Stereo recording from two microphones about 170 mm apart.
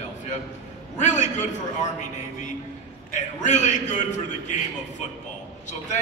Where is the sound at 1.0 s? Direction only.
45° left (ahead or behind).